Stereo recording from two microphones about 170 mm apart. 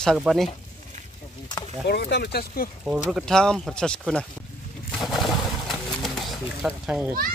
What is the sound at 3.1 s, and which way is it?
Speech, 5° left (ahead or behind).